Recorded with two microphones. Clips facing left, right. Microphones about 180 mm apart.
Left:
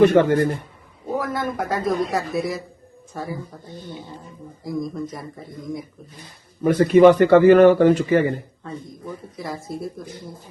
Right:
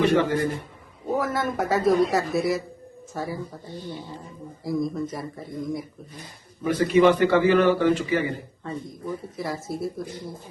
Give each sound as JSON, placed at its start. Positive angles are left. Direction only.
{"t": 0.0, "sound": "a man's voice", "side_deg": 50}
{"t": 1.0, "sound": "a sound", "side_deg": 0}
{"t": 1.5, "sound": "speech", "side_deg": -5}
{"t": 6.7, "sound": "a man's voice", "side_deg": 50}
{"t": 8.6, "sound": "speech", "side_deg": 0}